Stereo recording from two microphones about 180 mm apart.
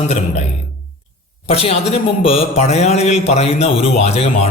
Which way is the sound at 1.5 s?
35° left (ahead or behind).